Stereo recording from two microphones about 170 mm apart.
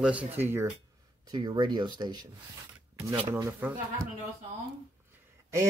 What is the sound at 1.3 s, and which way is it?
Speech, 25° right (ahead or behind).